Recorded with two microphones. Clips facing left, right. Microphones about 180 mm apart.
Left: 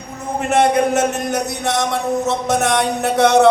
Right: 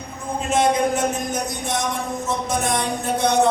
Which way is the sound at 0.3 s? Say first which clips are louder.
Left 4 dB; 65° left (ahead or behind).